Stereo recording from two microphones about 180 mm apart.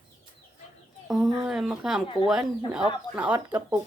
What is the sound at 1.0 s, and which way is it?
Speech, centre (ahead or behind).